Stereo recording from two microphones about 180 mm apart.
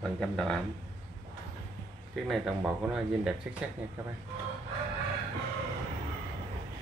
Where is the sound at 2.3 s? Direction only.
5° right (ahead or behind).